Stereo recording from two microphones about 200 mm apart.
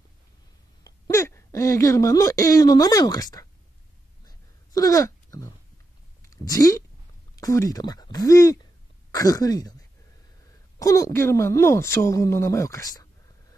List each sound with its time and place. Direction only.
0.8 s speech: 15° left (ahead or behind)
4.3 s a sound: 15° left (ahead or behind)
7.3 s speech: 15° left (ahead or behind)
10.8 s speech: 15° left (ahead or behind)